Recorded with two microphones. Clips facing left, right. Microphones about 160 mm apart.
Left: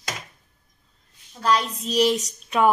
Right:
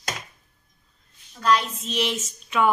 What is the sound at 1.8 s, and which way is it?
Speech, 40° left (ahead or behind).